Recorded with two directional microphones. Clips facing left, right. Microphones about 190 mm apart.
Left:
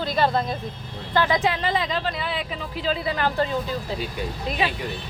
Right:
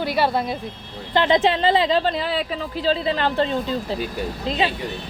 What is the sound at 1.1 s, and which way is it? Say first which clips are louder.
Speech: right 4 dB; 25° right (ahead or behind).